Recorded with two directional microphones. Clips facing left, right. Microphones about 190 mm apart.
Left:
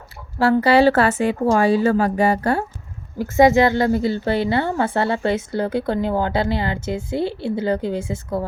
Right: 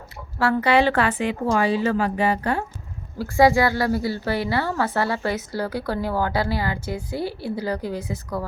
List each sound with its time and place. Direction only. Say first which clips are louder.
0.3 s a woman's voice: left 4 dB; 35° left (ahead or behind)
3.2 s a woman's voice: left 3 dB; 20° left (ahead or behind)